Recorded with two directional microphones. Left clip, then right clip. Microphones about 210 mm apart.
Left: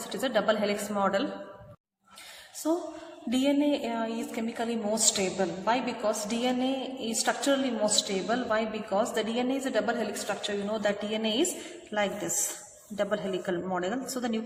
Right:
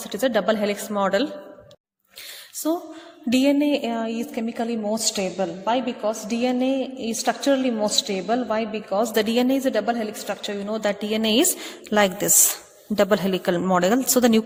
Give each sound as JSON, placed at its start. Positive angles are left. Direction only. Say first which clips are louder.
{"t": 0.1, "sound": "a woman's voice", "louder": "right 6 dB", "side_deg": -40}
{"t": 2.6, "sound": "a woman's voice", "louder": "right 4 dB", "side_deg": -45}